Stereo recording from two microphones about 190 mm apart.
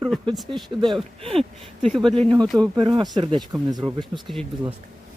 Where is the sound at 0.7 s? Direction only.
20° right (ahead or behind).